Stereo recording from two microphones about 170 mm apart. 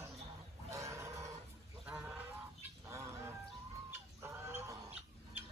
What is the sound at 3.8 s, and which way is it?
Chicken, 15° right (ahead or behind).